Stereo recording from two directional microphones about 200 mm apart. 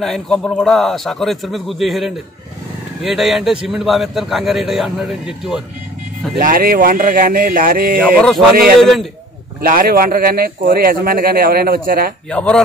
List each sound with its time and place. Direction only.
0.0 s a man's voice: 5° left (ahead or behind)
6.4 s a man's voice: 45° right (ahead or behind)
8.2 s a man's voice: 5° left (ahead or behind)
9.6 s a man's voice: 45° right (ahead or behind)
12.3 s a man's voice: 5° left (ahead or behind)